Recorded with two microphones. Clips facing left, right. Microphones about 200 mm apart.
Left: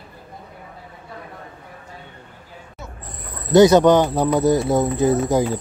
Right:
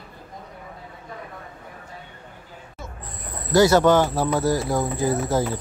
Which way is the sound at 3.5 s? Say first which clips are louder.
Left 4 dB; 20° left (ahead or behind).